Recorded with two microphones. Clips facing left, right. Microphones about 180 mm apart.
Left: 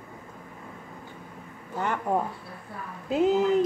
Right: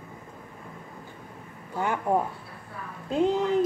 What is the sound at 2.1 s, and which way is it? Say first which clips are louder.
Speech: right 2 dB; 10° right (ahead or behind).